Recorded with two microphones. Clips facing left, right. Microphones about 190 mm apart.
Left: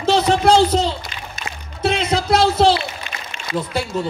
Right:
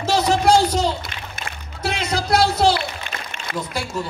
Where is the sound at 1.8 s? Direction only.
30° left (ahead or behind).